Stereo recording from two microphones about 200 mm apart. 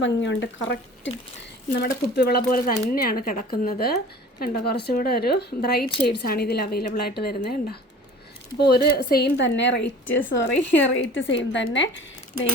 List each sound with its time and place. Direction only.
0.0 s a woman's voice: 65° left (ahead or behind)